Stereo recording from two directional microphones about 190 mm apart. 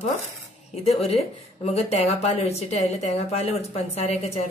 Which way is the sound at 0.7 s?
30° left (ahead or behind).